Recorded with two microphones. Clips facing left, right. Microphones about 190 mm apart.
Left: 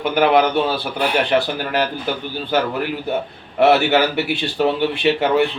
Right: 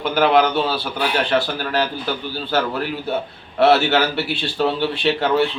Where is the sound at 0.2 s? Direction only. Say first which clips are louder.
Left 1 dB; 10° left (ahead or behind).